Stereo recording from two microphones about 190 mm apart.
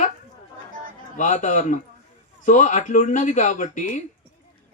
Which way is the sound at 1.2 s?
40° left (ahead or behind).